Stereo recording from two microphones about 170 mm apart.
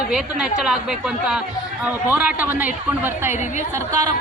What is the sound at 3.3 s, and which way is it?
Speech, 45° left (ahead or behind).